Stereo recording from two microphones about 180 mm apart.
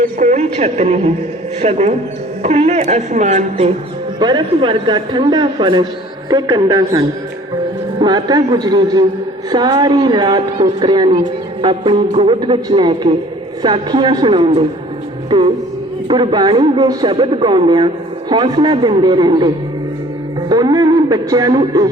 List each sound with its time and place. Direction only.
0.2 s speech: 40° right (ahead or behind)
4.2 s a woman's voice: 25° right (ahead or behind)
8.0 s a woman's voice: 20° right (ahead or behind)
20.5 s a woman's voice: 20° right (ahead or behind)